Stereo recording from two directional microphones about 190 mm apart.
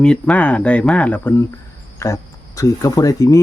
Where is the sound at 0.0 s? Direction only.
5° left (ahead or behind).